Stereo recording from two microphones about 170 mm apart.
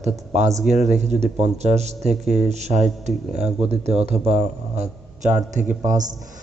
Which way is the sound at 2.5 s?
40° right (ahead or behind).